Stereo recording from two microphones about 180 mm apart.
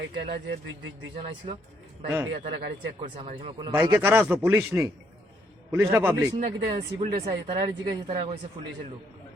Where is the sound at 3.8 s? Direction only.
15° right (ahead or behind).